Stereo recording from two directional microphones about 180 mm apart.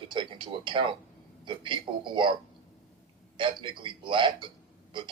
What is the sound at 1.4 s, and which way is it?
Speech, 25° right (ahead or behind).